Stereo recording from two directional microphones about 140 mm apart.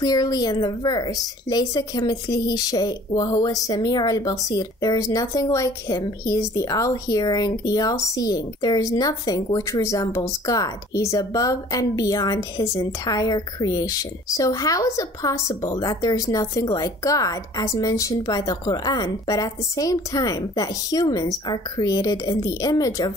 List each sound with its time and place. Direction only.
0.0 s a woman's voice: 25° left (ahead or behind)